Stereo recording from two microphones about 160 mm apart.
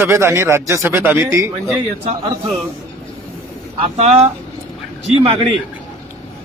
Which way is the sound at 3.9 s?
40° right (ahead or behind).